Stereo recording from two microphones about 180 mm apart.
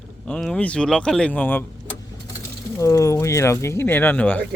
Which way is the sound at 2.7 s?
15° left (ahead or behind).